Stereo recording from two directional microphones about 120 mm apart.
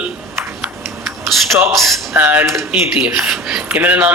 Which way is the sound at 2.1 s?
15° right (ahead or behind).